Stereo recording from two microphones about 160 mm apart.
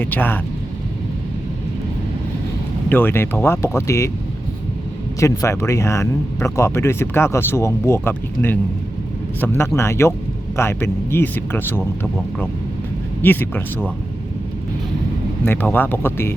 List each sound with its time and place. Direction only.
0.0 s speech: 10° left (ahead or behind)
2.9 s speech: 15° left (ahead or behind)
5.2 s speech: 20° left (ahead or behind)
13.2 s speech: 10° left (ahead or behind)
15.4 s speech: 10° left (ahead or behind)